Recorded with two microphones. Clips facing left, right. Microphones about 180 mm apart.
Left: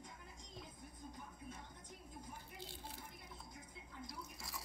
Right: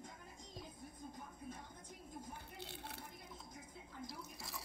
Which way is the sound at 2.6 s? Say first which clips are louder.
Right 2 dB; 65° right (ahead or behind).